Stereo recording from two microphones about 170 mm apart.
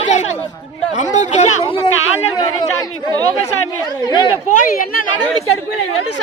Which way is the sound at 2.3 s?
20° left (ahead or behind).